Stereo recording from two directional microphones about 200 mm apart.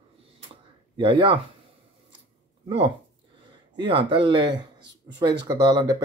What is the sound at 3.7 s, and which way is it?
Speech, 25° right (ahead or behind).